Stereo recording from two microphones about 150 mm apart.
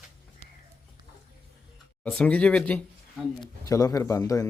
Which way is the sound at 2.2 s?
5° left (ahead or behind).